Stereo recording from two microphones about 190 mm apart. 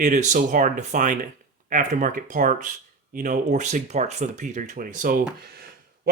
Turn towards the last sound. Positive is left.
turn(degrees=-45)  # may be behind; listen again after turning